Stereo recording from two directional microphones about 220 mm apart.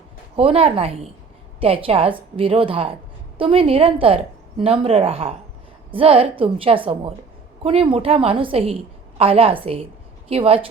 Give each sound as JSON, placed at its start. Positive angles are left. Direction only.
{"t": 0.3, "sound": "a woman's voice", "side_deg": -25}